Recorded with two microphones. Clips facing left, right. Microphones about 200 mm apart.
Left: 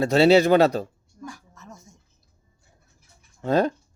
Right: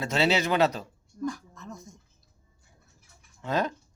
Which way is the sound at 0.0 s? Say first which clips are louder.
Left 9 dB; 35° left (ahead or behind).